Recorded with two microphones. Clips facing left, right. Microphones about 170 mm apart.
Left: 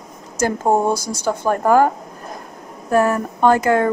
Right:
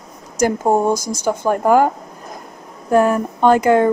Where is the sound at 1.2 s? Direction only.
15° right (ahead or behind).